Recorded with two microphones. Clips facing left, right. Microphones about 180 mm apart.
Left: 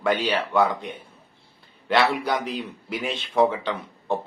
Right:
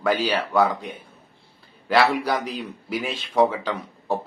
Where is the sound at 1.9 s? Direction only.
5° right (ahead or behind).